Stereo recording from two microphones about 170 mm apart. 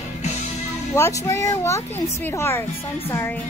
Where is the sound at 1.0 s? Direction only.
15° left (ahead or behind).